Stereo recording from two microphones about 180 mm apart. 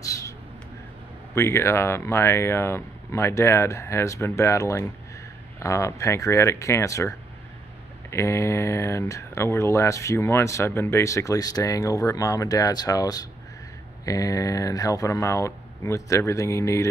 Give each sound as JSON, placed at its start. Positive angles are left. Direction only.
{"t": 1.3, "sound": "speech", "side_deg": 15}